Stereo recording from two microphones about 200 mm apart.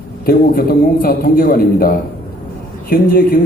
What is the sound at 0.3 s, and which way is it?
A man's voice, 50° left (ahead or behind).